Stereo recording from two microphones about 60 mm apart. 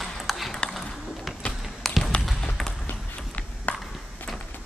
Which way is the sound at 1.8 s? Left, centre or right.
Centre.